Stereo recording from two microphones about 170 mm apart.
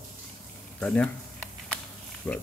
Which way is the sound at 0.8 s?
5° left (ahead or behind).